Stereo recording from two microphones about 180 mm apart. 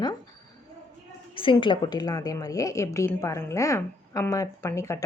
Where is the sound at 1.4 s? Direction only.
30° left (ahead or behind).